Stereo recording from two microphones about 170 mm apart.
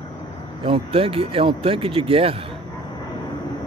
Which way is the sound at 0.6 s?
30° right (ahead or behind).